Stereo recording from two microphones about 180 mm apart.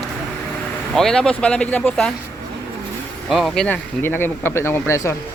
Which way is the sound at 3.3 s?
Centre (ahead or behind).